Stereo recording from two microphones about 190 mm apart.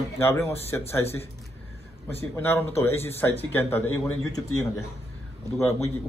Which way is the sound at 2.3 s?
10° left (ahead or behind).